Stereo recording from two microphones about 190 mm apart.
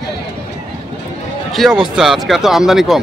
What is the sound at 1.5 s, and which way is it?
Speech, centre (ahead or behind).